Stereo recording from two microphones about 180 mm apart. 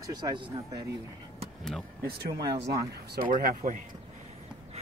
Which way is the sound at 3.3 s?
45° right (ahead or behind).